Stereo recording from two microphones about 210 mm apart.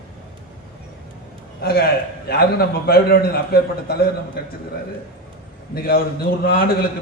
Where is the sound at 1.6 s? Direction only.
50° left (ahead or behind).